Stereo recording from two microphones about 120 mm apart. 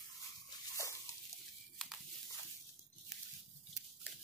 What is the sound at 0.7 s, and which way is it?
Dog, 25° left (ahead or behind).